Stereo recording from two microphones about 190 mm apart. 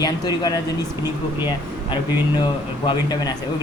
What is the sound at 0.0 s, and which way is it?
Speech, 20° left (ahead or behind).